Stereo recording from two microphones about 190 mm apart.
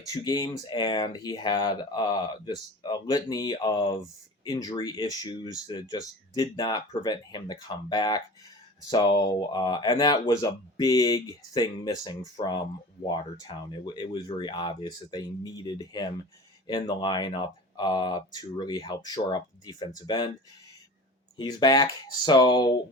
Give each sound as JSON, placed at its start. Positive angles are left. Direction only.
{"t": 0.0, "sound": "speech", "side_deg": 20}
{"t": 21.3, "sound": "speech", "side_deg": 20}